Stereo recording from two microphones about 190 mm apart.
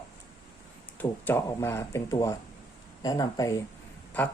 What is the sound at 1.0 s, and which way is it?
Speech, 10° left (ahead or behind).